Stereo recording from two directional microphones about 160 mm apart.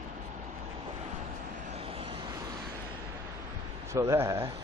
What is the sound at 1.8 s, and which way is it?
Vehicle, 35° right (ahead or behind).